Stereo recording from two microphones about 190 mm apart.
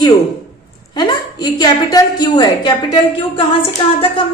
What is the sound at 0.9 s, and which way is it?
A woman's voice, 20° left (ahead or behind).